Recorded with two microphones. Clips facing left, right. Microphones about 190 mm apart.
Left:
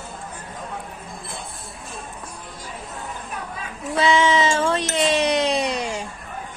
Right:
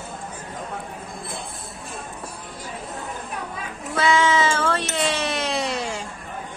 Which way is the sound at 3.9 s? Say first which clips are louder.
Left 2 dB; 20° left (ahead or behind).